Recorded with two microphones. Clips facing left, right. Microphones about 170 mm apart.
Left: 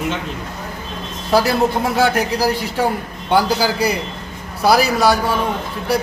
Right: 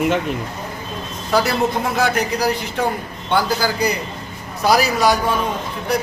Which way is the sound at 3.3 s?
10° left (ahead or behind).